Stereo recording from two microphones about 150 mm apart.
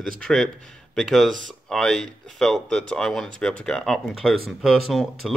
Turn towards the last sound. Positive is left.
turn(degrees=0)  # may be behind; listen again after turning